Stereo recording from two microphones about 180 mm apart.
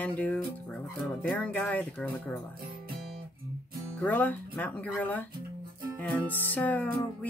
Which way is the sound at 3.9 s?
10° left (ahead or behind).